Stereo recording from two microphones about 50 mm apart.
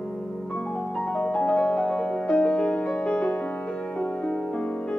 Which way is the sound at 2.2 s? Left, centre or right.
Left.